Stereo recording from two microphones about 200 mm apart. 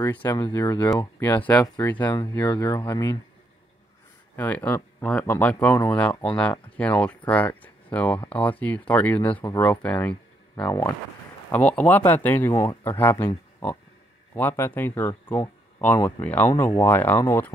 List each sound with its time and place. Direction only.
0.0 s speech: 10° left (ahead or behind)
2.5 s speech: 20° left (ahead or behind)
4.4 s speech: 10° left (ahead or behind)
14.3 s speech: 10° left (ahead or behind)